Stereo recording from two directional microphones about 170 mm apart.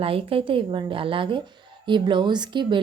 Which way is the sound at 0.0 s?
35° right (ahead or behind).